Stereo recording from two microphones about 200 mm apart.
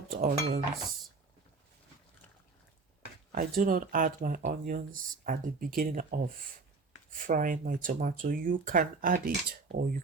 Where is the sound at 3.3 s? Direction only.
45° right (ahead or behind).